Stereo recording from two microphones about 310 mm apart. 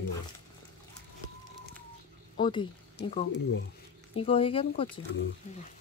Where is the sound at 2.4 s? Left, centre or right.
Centre.